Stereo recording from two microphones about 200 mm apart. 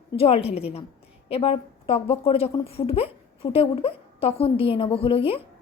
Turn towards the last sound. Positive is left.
turn(degrees=30)  # may be behind; listen again after turning